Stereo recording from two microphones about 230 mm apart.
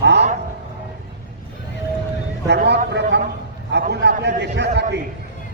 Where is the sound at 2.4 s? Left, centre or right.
Right.